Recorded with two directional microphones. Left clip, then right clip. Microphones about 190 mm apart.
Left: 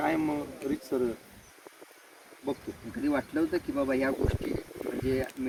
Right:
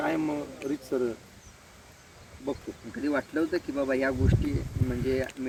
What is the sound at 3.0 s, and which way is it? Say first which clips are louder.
Speech: right 1 dB; 35° left (ahead or behind).